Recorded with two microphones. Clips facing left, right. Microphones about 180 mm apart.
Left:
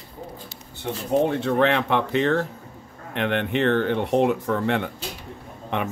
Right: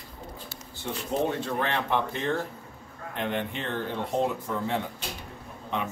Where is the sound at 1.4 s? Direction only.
70° left (ahead or behind).